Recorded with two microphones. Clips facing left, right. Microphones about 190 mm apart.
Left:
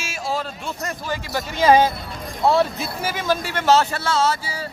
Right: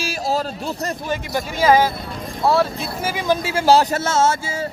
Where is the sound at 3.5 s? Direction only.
35° right (ahead or behind).